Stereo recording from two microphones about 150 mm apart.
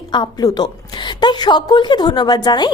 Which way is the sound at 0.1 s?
25° left (ahead or behind).